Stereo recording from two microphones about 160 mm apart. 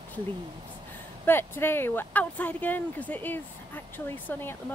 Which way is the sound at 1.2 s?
15° left (ahead or behind).